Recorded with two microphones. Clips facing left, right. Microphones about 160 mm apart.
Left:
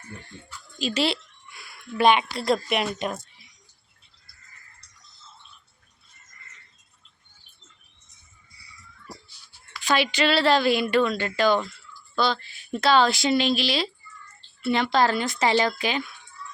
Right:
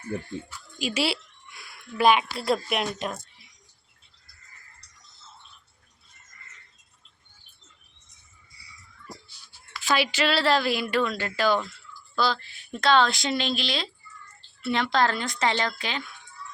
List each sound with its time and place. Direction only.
0.8 s a woman's voice: 10° right (ahead or behind)
9.8 s speech: 5° right (ahead or behind); by 16.0 s 10° left (ahead or behind)